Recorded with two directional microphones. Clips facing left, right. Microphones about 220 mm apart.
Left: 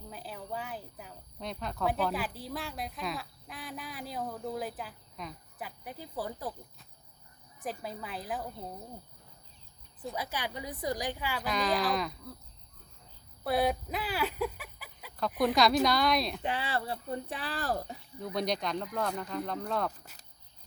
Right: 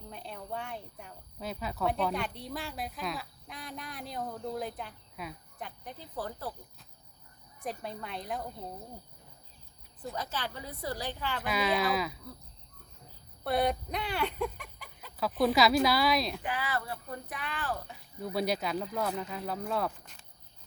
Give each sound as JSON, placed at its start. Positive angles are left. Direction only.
{"t": 0.1, "sound": "a woman's voice", "side_deg": 5}
{"t": 7.6, "sound": "a woman's voice", "side_deg": 0}
{"t": 10.0, "sound": "a woman's voice", "side_deg": 10}
{"t": 11.4, "sound": "a woman's voice", "side_deg": -5}
{"t": 13.4, "sound": "a woman's voice", "side_deg": 0}
{"t": 16.4, "sound": "speech", "side_deg": 25}
{"t": 18.2, "sound": "a woman's voice", "side_deg": -5}
{"t": 20.1, "sound": "a sound", "side_deg": 5}